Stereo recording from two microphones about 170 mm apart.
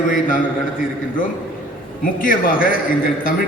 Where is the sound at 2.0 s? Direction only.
55° left (ahead or behind).